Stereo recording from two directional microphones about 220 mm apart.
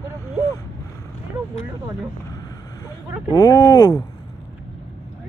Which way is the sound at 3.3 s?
15° left (ahead or behind).